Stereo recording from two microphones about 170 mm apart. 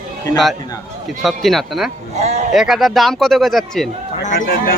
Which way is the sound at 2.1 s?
40° right (ahead or behind).